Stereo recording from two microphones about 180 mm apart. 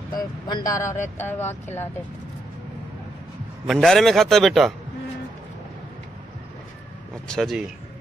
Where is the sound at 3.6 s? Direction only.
5° left (ahead or behind).